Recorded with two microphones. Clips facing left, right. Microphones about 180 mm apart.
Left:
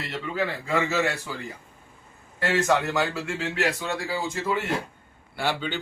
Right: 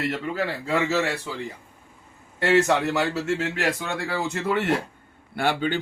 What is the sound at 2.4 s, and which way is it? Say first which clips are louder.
Speech: right 3 dB; 25° right (ahead or behind).